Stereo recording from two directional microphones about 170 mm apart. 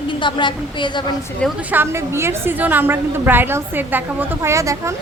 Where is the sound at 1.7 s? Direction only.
15° right (ahead or behind).